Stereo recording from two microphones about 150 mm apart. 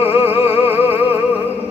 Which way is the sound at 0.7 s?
15° right (ahead or behind).